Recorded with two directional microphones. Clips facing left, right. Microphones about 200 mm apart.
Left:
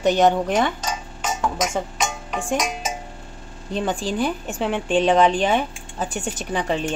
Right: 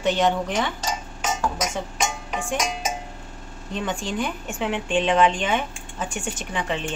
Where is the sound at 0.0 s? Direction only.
40° left (ahead or behind).